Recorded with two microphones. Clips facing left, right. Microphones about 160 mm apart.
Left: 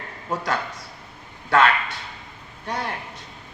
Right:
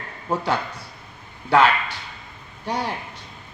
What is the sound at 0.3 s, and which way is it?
Speech, 30° right (ahead or behind).